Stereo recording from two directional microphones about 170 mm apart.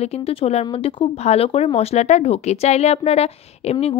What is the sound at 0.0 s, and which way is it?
A woman's voice, 35° left (ahead or behind).